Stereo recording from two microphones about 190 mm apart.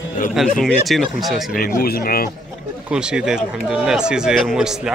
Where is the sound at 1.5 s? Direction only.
50° left (ahead or behind).